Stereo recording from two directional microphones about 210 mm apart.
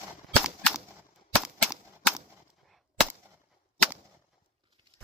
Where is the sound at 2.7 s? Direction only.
Centre (ahead or behind).